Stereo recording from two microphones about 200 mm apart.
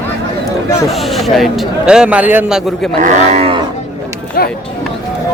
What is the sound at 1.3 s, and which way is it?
Speech, centre (ahead or behind).